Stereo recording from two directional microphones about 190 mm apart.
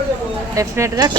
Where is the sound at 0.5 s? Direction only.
15° right (ahead or behind).